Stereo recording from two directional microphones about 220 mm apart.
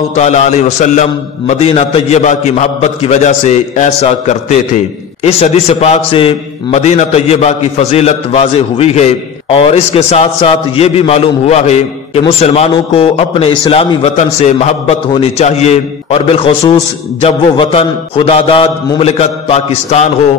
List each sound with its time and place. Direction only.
0.1 s a man's voice: 30° left (ahead or behind)